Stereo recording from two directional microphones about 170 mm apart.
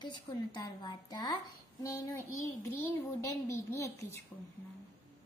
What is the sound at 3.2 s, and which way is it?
A woman's voice, 15° left (ahead or behind).